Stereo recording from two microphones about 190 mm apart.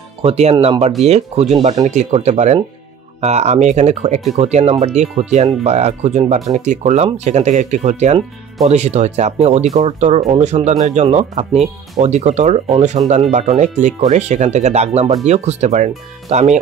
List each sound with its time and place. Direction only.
0.2 s speech: 35° right (ahead or behind)